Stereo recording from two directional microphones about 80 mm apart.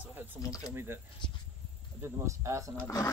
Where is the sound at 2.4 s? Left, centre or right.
Right.